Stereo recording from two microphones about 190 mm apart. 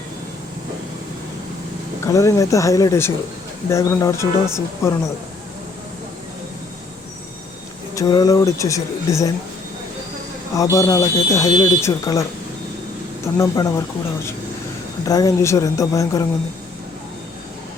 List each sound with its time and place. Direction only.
2.0 s speech: 15° left (ahead or behind)
7.9 s speech: 20° left (ahead or behind)
10.5 s speech: 15° left (ahead or behind)
13.2 s speech: 15° left (ahead or behind)
15.0 s speech: 20° left (ahead or behind)